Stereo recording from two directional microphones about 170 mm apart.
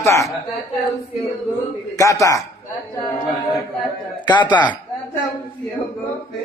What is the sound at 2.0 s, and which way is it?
Speech, 20° left (ahead or behind).